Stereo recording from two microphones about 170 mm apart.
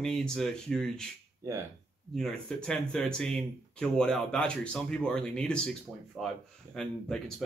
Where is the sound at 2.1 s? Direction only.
5° left (ahead or behind).